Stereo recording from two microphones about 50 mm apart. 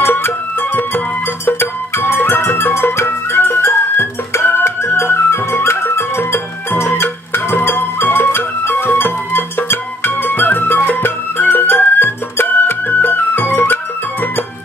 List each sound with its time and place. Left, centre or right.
0.0 s music: left